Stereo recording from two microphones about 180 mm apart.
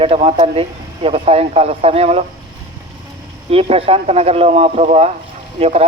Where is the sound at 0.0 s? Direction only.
35° right (ahead or behind).